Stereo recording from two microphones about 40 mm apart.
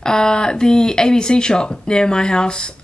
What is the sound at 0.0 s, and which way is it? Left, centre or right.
Speech, centre.